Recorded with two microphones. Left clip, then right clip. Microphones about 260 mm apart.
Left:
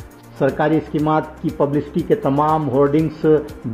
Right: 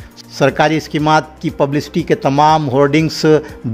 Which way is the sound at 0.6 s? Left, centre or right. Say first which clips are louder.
Right 4 dB; right.